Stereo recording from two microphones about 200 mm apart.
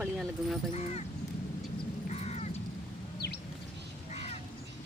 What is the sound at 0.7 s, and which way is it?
Speech, 35° left (ahead or behind).